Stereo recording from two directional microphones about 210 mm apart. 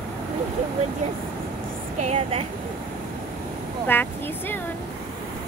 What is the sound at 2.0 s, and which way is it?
Speech, 30° right (ahead or behind).